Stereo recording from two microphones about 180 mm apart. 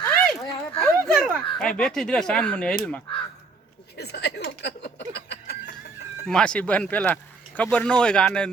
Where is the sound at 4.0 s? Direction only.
65° left (ahead or behind).